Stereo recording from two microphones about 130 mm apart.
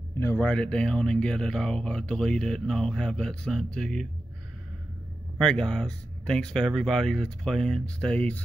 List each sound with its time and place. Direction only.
0.2 s speech: 15° left (ahead or behind)
5.4 s speech: 5° left (ahead or behind)